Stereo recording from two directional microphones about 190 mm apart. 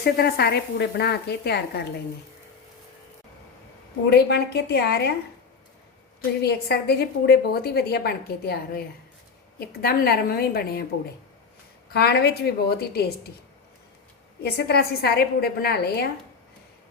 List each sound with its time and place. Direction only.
0.0 s a woman's voice: 55° left (ahead or behind)
4.0 s a woman's voice: 60° left (ahead or behind)
6.4 s a woman's voice: 60° left (ahead or behind)
11.9 s a woman's voice: 55° left (ahead or behind)
14.4 s a woman's voice: 60° left (ahead or behind)